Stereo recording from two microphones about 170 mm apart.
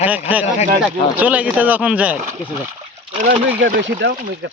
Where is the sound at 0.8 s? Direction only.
10° right (ahead or behind).